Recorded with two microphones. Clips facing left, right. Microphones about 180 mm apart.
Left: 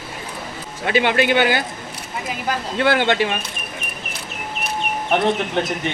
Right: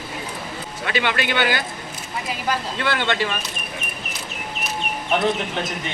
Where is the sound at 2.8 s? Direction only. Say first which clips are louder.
Left 6 dB; 50° left (ahead or behind).